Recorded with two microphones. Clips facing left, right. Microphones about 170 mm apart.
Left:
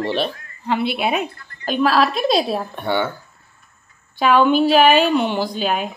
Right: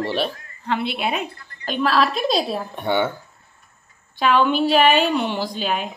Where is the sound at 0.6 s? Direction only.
5° left (ahead or behind).